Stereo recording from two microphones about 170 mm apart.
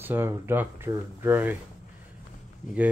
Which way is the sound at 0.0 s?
10° right (ahead or behind).